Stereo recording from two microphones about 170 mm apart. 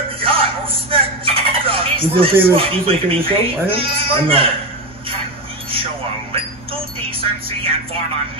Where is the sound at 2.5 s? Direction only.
35° right (ahead or behind).